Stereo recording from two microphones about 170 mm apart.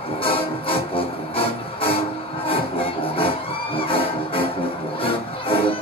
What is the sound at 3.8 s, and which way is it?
Music, 30° left (ahead or behind).